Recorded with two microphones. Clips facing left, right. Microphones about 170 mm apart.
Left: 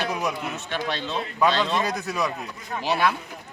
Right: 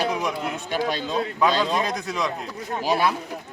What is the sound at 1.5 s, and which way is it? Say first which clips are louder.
Speech: even; 10° right (ahead or behind).